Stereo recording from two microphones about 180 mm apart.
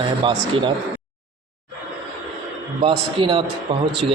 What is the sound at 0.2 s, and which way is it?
Speech, 25° right (ahead or behind).